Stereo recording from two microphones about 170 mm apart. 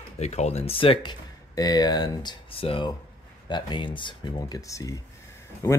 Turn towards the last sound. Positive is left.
turn(degrees=20)  # may be behind; listen again after turning